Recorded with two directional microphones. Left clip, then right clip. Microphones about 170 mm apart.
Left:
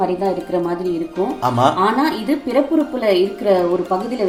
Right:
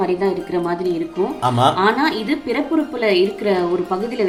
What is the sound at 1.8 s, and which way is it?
Speech, 20° left (ahead or behind).